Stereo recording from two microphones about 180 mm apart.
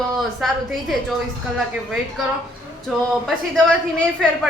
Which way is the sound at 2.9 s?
Centre (ahead or behind).